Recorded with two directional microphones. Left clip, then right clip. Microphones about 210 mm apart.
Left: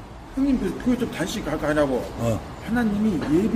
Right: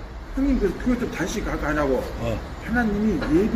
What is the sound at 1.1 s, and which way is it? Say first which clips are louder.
Speech: even; 45° left (ahead or behind).